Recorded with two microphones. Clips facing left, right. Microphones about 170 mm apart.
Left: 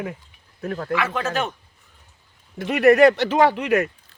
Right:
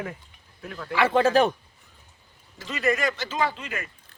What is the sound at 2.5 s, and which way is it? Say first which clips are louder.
Speech: left 11 dB; 60° left (ahead or behind).